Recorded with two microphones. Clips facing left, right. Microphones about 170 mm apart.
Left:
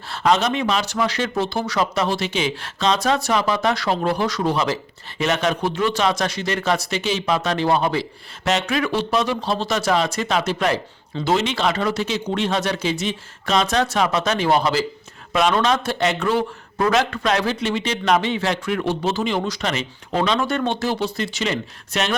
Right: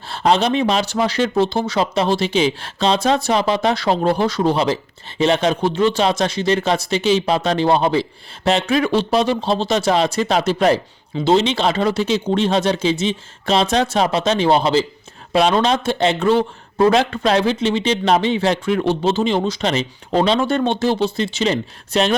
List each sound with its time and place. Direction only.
0.1 s speech: 30° right (ahead or behind)